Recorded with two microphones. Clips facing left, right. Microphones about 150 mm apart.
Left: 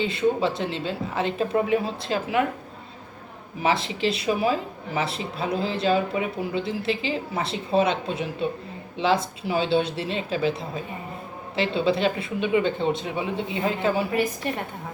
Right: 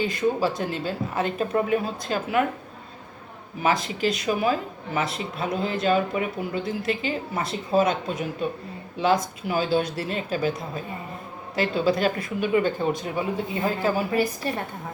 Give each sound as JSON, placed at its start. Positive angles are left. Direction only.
{"t": 0.0, "sound": "a woman's voice", "side_deg": 25}
{"t": 3.6, "sound": "a woman's voice", "side_deg": 30}